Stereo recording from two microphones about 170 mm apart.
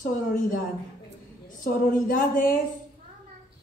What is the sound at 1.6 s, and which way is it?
Speech, 55° left (ahead or behind).